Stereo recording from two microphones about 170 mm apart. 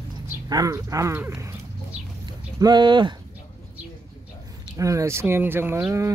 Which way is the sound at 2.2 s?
25° right (ahead or behind).